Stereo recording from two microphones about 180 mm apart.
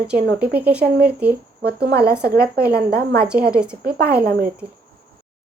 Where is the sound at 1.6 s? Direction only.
60° right (ahead or behind).